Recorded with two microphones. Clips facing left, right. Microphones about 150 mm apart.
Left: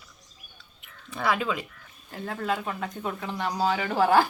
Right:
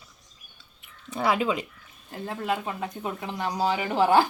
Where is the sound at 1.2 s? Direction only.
25° right (ahead or behind).